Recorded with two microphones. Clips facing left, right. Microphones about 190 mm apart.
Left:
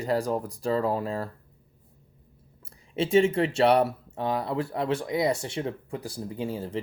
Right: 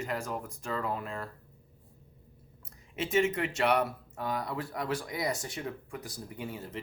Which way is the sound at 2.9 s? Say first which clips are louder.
Left 7 dB; 30° left (ahead or behind).